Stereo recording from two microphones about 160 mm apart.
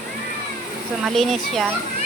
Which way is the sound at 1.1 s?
Centre (ahead or behind).